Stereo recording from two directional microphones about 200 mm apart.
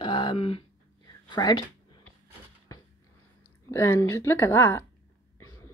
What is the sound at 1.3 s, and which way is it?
Speech, 20° left (ahead or behind).